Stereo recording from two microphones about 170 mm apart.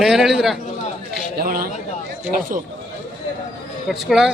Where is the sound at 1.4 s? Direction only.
60° right (ahead or behind).